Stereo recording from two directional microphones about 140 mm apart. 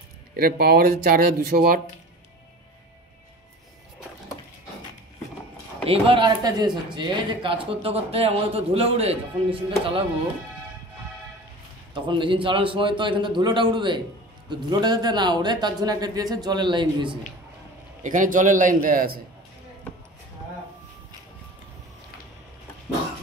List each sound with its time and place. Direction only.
0.4 s speech: 90° right
5.9 s speech: 40° right (ahead or behind)
11.9 s speech: 35° right (ahead or behind)
18.0 s a man's voice: 65° right (ahead or behind); by 19.2 s 90° right